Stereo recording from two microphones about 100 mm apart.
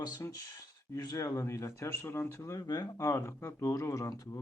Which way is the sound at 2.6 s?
40° left (ahead or behind).